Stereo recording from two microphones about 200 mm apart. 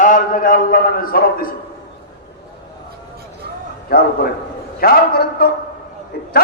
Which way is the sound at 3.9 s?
50° left (ahead or behind).